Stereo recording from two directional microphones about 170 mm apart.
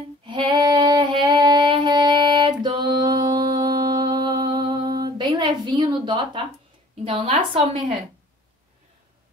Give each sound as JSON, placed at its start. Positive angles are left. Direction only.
{"t": 0.2, "sound": "female singing", "side_deg": -30}
{"t": 7.1, "sound": "a woman's voice", "side_deg": -30}